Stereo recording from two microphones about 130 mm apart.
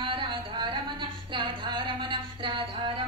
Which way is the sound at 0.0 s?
40° right (ahead or behind).